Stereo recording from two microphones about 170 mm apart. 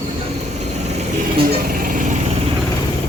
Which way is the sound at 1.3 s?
60° right (ahead or behind).